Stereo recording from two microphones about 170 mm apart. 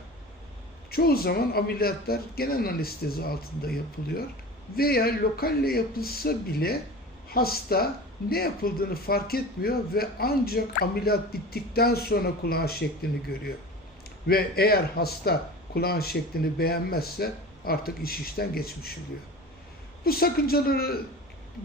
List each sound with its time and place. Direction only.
0.9 s speech: 65° left (ahead or behind)
20.1 s speech: 65° left (ahead or behind)